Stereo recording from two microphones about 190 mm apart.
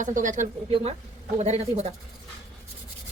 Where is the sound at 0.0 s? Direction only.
40° right (ahead or behind).